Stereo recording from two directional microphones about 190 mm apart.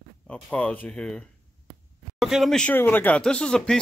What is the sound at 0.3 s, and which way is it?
Speech, 5° left (ahead or behind).